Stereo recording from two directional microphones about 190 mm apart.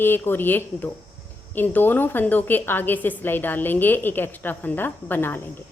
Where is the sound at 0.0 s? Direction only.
10° left (ahead or behind).